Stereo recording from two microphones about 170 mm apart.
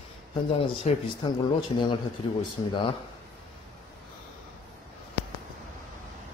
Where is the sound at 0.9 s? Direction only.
40° left (ahead or behind).